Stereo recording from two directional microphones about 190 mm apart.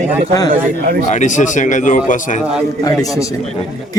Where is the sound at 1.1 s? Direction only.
40° left (ahead or behind).